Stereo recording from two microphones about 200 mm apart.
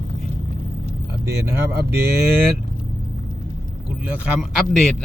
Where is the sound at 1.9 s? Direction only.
55° right (ahead or behind).